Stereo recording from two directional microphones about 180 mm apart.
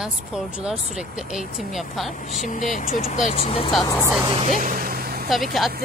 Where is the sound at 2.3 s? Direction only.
45° left (ahead or behind).